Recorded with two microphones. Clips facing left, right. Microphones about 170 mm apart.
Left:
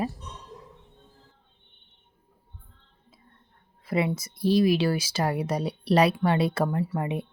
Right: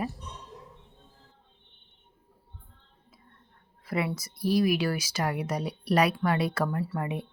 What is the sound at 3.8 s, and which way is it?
Speech, 25° left (ahead or behind).